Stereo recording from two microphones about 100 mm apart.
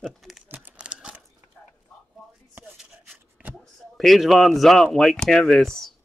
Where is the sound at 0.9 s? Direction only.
5° right (ahead or behind).